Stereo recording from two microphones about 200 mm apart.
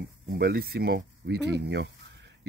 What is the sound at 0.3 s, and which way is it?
Speech, 50° right (ahead or behind).